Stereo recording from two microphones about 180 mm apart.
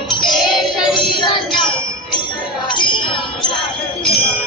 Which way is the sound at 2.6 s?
25° left (ahead or behind).